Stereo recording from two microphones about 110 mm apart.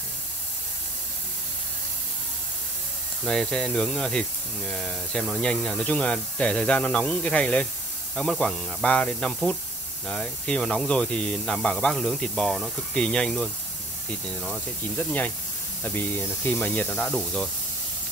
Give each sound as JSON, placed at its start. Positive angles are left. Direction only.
{"t": 3.3, "sound": "speech", "side_deg": 5}
{"t": 15.0, "sound": "speech", "side_deg": 15}